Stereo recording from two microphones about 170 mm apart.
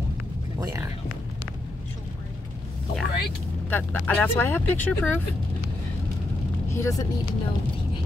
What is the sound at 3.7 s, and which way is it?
Speech, 10° left (ahead or behind).